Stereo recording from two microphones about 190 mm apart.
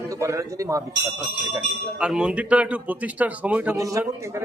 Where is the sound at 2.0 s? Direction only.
5° right (ahead or behind).